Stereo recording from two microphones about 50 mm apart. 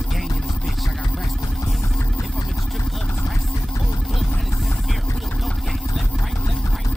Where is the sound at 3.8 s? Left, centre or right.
Centre.